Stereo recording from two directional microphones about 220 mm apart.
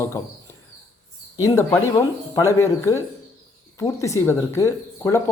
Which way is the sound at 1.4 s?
15° left (ahead or behind).